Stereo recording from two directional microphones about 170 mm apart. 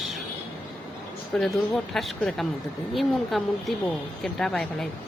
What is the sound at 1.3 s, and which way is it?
Speech, 5° left (ahead or behind).